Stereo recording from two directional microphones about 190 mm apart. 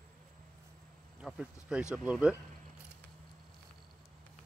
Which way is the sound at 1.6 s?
5° right (ahead or behind).